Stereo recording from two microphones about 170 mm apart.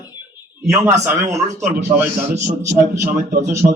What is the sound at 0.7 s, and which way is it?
A man's voice, 15° right (ahead or behind).